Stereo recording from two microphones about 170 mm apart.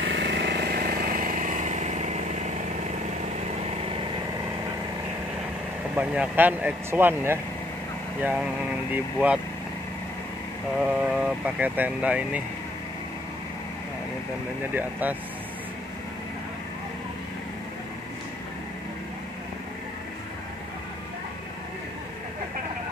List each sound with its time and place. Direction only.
0.0 s vehicle: 90° right; by 2.5 s 45° right (ahead or behind)
5.9 s speech: 10° right (ahead or behind)
10.8 s speech: 5° right (ahead or behind)
14.7 s speech: 10° right (ahead or behind)